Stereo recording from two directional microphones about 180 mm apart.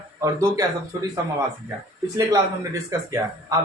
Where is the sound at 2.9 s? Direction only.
15° right (ahead or behind).